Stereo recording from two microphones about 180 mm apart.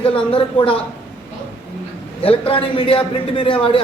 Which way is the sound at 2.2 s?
30° left (ahead or behind).